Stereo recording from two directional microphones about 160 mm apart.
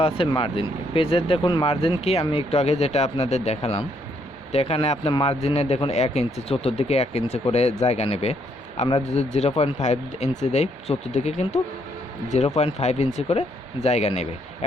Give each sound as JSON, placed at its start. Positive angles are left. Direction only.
{"t": 0.0, "sound": "speech", "side_deg": 35}